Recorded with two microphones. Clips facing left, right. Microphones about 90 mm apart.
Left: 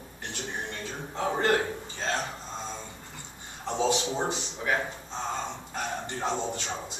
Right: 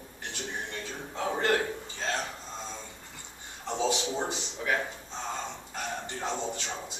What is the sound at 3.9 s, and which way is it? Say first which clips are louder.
Speech: left 3 dB; 25° left (ahead or behind).